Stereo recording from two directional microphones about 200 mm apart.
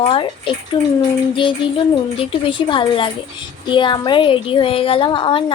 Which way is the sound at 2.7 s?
25° left (ahead or behind).